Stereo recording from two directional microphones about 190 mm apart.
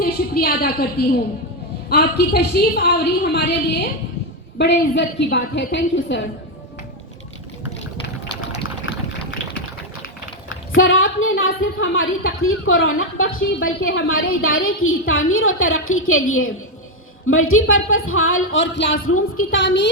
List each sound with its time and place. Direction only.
0.0 s a woman's voice: 55° left (ahead or behind); by 6.2 s 70° left (ahead or behind)
10.5 s a woman's voice: 90° left; by 19.9 s 70° left (ahead or behind)